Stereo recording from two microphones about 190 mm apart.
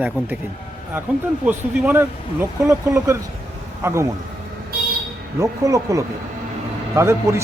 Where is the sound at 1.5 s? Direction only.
10° right (ahead or behind).